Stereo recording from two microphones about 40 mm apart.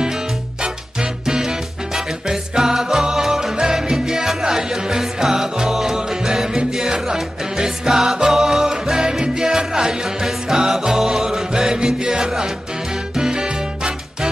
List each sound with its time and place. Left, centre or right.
1.2 s music: centre